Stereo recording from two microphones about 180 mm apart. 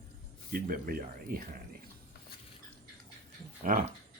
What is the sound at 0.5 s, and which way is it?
Speech, 55° right (ahead or behind).